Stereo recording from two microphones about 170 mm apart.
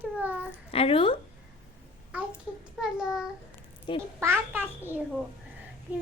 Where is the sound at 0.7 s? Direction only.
35° left (ahead or behind).